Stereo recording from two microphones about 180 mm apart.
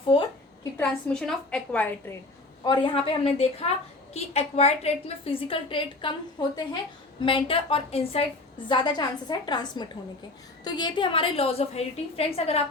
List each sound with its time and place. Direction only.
0.1 s a woman's voice: 30° left (ahead or behind)
0.6 s a woman's voice: 10° left (ahead or behind)
2.6 s a woman's voice: 25° left (ahead or behind)